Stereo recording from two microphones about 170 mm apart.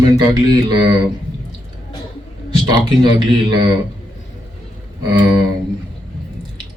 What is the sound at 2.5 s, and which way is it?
A man's voice, 25° right (ahead or behind).